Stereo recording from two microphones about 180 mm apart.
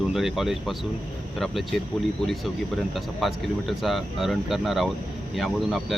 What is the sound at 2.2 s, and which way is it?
Speech, centre (ahead or behind).